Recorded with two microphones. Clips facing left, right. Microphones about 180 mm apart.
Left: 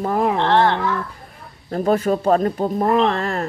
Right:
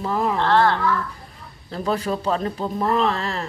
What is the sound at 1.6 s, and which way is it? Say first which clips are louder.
Speech: left 6 dB; 50° left (ahead or behind).